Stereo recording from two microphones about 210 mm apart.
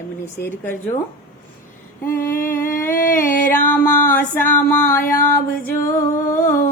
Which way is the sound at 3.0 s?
40° left (ahead or behind).